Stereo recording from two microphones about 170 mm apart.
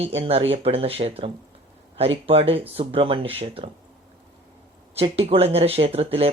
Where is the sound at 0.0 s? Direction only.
35° right (ahead or behind).